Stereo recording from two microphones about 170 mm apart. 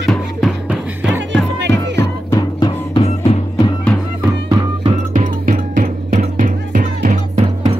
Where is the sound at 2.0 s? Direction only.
20° left (ahead or behind).